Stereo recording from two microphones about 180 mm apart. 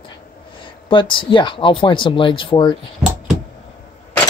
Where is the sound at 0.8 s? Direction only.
30° left (ahead or behind).